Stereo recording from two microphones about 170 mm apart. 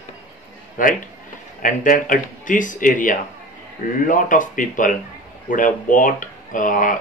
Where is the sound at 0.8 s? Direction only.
50° left (ahead or behind).